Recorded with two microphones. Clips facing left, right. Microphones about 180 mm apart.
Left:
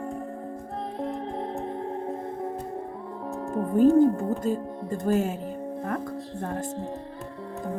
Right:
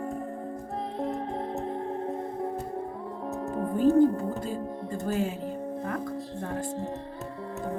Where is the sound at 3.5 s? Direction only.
45° left (ahead or behind).